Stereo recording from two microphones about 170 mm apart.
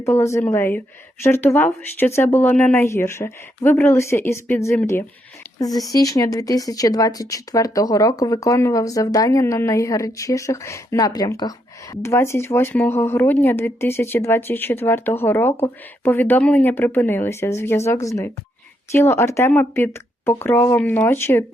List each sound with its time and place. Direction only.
0.0 s speech: 15° left (ahead or behind)